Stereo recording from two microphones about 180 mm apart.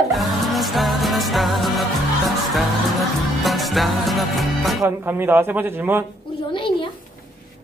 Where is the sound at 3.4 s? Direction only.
Centre (ahead or behind).